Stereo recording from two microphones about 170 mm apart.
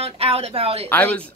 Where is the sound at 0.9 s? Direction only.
10° left (ahead or behind).